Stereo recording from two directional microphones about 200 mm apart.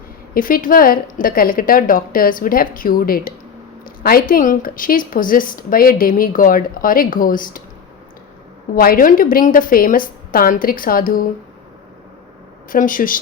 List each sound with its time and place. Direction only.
0.3 s a woman's voice: 45° left (ahead or behind)
8.7 s a woman's voice: 45° left (ahead or behind)
12.7 s a woman's voice: 45° left (ahead or behind)